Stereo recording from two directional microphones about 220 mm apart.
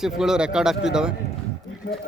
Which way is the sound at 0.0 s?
Centre (ahead or behind).